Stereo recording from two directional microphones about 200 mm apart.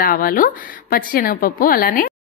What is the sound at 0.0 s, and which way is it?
A woman's voice, 45° left (ahead or behind).